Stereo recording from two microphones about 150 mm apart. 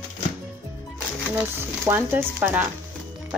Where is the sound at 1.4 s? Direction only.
15° right (ahead or behind).